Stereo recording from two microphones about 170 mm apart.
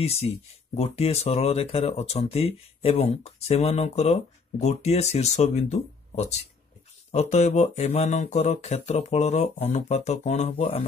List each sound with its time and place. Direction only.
0.0 s speech: 35° left (ahead or behind)